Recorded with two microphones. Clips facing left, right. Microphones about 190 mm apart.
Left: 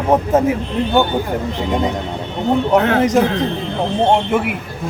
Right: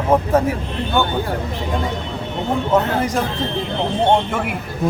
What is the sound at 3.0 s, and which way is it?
Speech, 20° left (ahead or behind).